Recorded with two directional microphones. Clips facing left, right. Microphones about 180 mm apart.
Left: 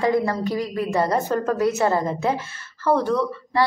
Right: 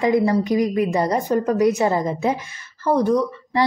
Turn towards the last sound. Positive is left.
turn(degrees=-15)  # may be behind; listen again after turning